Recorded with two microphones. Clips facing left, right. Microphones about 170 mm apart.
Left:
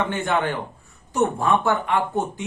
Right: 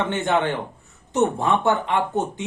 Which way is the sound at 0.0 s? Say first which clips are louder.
Right 1 dB; 20° right (ahead or behind).